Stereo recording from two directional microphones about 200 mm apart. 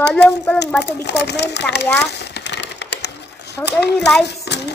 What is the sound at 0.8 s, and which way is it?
Speech, 55° left (ahead or behind).